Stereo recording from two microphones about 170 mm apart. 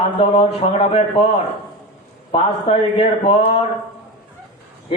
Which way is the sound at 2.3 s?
35° left (ahead or behind).